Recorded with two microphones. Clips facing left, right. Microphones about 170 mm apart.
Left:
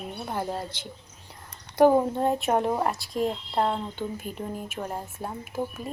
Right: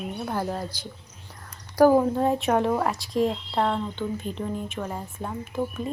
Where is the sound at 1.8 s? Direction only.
25° left (ahead or behind).